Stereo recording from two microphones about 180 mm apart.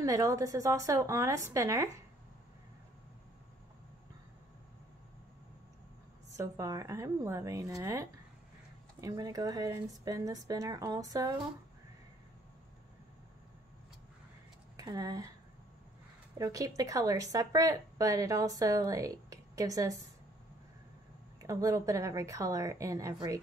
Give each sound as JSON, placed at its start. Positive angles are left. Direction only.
{"t": 0.0, "sound": "a woman's voice", "side_deg": -20}
{"t": 6.3, "sound": "a woman's voice", "side_deg": -15}
{"t": 14.8, "sound": "speech", "side_deg": -20}
{"t": 16.3, "sound": "a woman's voice", "side_deg": -20}
{"t": 21.4, "sound": "a woman's voice", "side_deg": -20}